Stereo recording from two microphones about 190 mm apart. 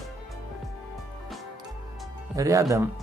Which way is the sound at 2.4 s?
15° right (ahead or behind).